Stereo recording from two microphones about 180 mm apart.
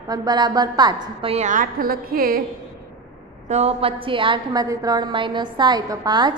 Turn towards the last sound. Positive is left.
turn(degrees=-25)  # may be behind; listen again after turning